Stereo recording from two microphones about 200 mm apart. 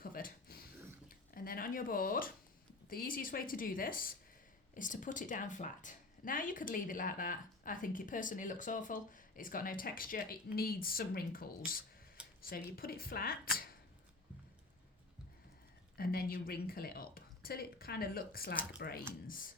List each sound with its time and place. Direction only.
0.0 s a sound: 45° left (ahead or behind)
2.9 s a woman's voice: 45° left (ahead or behind)
16.0 s a woman's voice: 45° left (ahead or behind)